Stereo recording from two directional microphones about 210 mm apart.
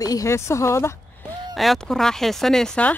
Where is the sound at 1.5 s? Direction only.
Centre (ahead or behind).